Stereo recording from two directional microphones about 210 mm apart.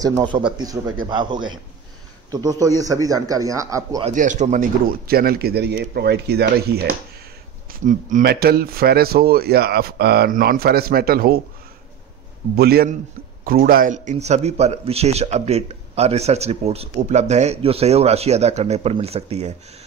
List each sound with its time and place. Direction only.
0.0 s speech: 20° right (ahead or behind)
4.0 s speech: 35° right (ahead or behind)
12.5 s a man's voice: 45° right (ahead or behind); by 19.5 s 30° right (ahead or behind)